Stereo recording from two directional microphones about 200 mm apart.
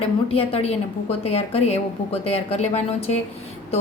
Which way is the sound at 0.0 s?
30° left (ahead or behind).